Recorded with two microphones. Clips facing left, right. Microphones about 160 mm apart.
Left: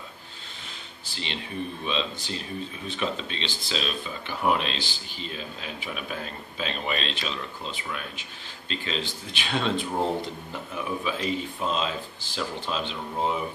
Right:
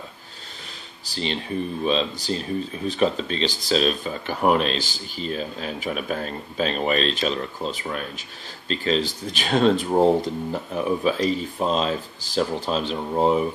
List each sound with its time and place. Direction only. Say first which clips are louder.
1.0 s speech: right 8 dB; 40° right (ahead or behind)